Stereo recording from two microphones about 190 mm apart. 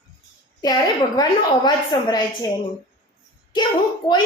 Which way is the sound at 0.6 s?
20° left (ahead or behind).